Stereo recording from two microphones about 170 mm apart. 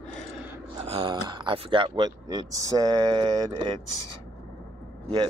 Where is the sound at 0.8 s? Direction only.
30° right (ahead or behind).